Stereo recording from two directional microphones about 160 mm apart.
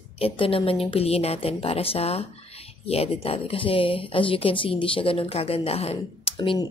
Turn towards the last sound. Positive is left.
turn(degrees=35)  # may be behind; listen again after turning